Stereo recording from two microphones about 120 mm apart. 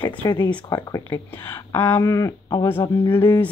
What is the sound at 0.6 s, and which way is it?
Speech, 30° left (ahead or behind).